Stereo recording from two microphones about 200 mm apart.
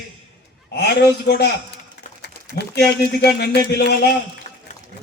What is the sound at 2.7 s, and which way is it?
A man's voice, 55° left (ahead or behind).